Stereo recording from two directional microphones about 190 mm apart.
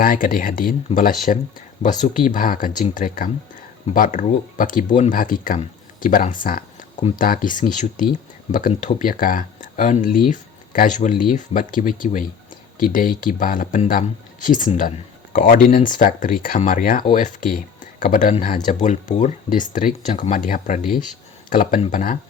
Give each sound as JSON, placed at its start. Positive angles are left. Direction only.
{"t": 0.0, "sound": "speech", "side_deg": 50}